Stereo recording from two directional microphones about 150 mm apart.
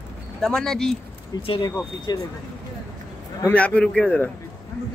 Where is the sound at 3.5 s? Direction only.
10° left (ahead or behind).